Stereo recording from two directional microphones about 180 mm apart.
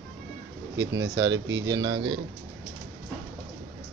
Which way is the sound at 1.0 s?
20° right (ahead or behind).